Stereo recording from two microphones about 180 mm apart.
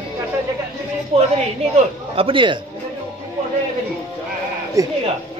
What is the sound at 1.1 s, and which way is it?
A woman's voice, 35° right (ahead or behind).